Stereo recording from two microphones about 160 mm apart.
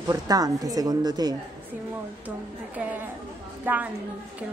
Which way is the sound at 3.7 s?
10° right (ahead or behind).